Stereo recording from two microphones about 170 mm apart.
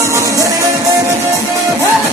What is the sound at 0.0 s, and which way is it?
Music, 20° right (ahead or behind).